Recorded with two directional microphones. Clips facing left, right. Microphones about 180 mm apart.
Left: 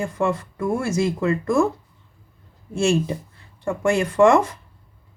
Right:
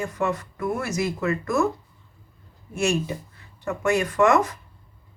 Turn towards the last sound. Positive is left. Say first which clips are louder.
# left 4 dB
turn(degrees=30)  # may be behind; listen again after turning